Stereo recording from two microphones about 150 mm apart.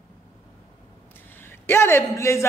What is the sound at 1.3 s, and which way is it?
A man's voice, 15° left (ahead or behind).